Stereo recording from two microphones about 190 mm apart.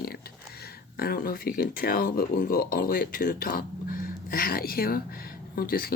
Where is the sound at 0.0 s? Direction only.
55° left (ahead or behind).